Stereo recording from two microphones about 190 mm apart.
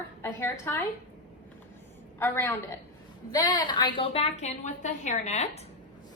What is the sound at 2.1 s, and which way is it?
A woman's voice, 10° left (ahead or behind).